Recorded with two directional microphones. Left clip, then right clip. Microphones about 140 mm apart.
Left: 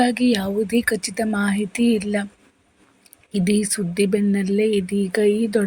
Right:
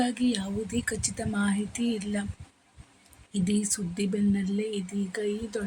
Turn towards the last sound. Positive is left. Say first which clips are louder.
# left 13 dB
turn(degrees=35)  # may be behind; listen again after turning